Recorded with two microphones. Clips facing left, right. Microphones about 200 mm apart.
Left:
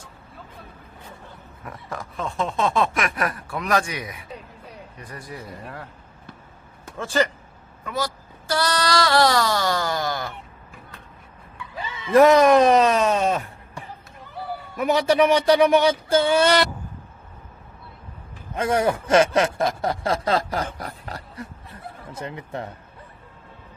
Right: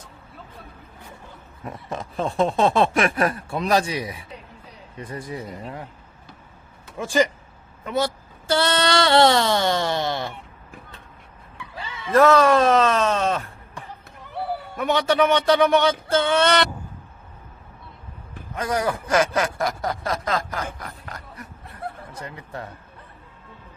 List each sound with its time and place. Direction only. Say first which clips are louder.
1.6 s speech: right 3 dB; 25° right (ahead or behind)
6.9 s speech: right 2 dB; 15° right (ahead or behind)
7.9 s a sound: right 4 dB; 25° right (ahead or behind)
11.8 s speech: left 2 dB; 15° left (ahead or behind)
14.8 s speech: left 2 dB; 5° left (ahead or behind)
18.5 s speech: left 3 dB; 25° left (ahead or behind)
20.7 s a sound: left 3 dB; 35° left (ahead or behind)
22.1 s speech: left 3 dB; 25° left (ahead or behind)